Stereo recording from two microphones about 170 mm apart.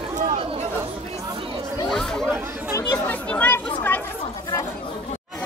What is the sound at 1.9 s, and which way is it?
Chatter, centre (ahead or behind).